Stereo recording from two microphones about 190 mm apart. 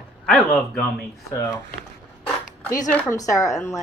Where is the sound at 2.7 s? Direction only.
15° left (ahead or behind).